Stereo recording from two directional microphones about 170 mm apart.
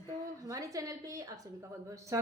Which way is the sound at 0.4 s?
20° right (ahead or behind).